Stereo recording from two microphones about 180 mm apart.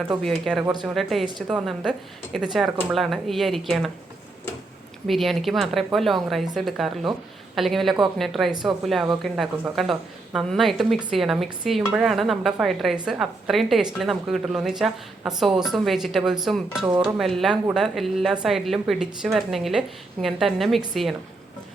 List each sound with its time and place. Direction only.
0.2 s a woman's voice: centre (ahead or behind)
5.0 s a woman's voice: centre (ahead or behind)